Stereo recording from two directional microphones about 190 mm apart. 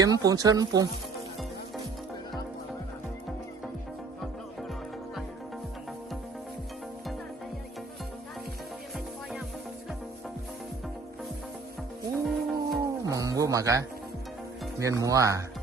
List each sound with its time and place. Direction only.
0.0 s speech: 20° right (ahead or behind)
12.2 s music: centre (ahead or behind)
12.8 s music: 15° right (ahead or behind)
14.8 s speech: 15° right (ahead or behind)